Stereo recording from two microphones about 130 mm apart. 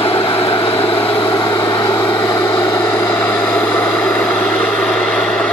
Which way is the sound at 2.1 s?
20° left (ahead or behind).